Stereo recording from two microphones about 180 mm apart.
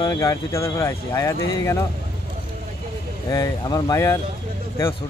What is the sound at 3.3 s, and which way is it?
Speech, 20° left (ahead or behind).